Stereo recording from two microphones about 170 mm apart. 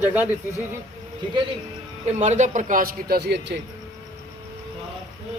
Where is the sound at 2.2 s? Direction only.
45° right (ahead or behind); by 3.6 s 75° right (ahead or behind).